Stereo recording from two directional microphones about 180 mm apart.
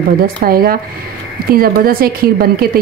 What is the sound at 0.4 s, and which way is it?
A woman's voice, 55° right (ahead or behind).